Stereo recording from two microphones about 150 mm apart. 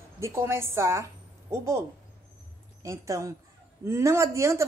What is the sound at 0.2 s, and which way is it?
A woman's voice, 15° right (ahead or behind).